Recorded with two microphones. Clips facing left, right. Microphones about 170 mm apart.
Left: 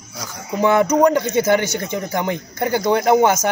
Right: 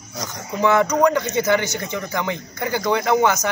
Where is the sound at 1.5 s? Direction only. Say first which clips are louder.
Left 3 dB; 50° left (ahead or behind).